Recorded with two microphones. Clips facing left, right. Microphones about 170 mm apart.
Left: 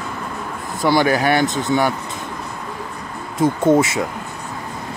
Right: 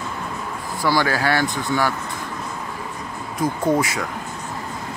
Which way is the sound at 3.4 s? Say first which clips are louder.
Left 5 dB; 25° left (ahead or behind).